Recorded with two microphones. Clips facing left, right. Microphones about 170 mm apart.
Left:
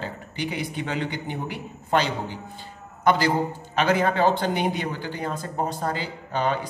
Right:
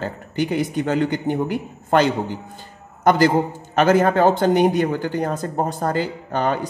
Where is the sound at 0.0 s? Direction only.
45° right (ahead or behind).